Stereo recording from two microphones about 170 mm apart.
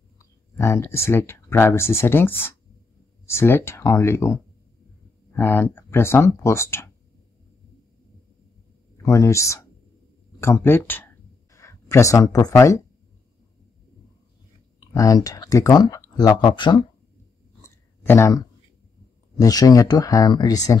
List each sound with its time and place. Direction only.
0.2 s speech: 15° left (ahead or behind)
9.0 s speech: 20° left (ahead or behind)
15.0 s speech: 20° left (ahead or behind)
17.6 s a sound: 15° left (ahead or behind)
19.3 s speech: 20° left (ahead or behind)